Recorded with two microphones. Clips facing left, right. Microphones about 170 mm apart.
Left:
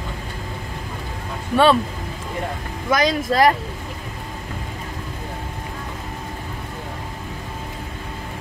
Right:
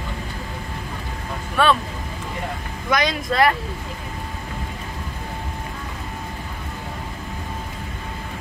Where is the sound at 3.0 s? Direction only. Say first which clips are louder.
Left 4 dB; 35° left (ahead or behind).